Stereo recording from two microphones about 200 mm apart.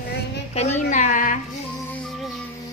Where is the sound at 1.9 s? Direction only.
5° left (ahead or behind).